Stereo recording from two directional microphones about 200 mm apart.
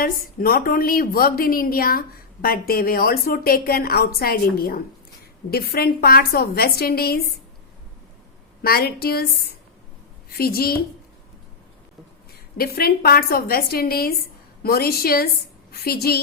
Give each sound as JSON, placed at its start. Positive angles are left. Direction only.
{"t": 0.0, "sound": "a woman's voice", "side_deg": 45}
{"t": 8.6, "sound": "a woman's voice", "side_deg": 50}
{"t": 10.2, "sound": "a woman's voice", "side_deg": 50}
{"t": 12.5, "sound": "a woman's voice", "side_deg": 50}